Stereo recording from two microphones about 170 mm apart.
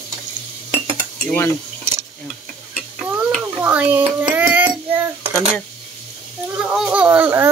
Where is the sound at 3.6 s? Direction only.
10° right (ahead or behind).